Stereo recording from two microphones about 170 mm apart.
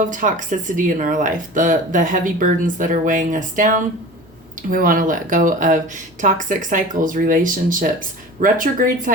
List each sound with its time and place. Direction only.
0.0 s speech: 50° right (ahead or behind)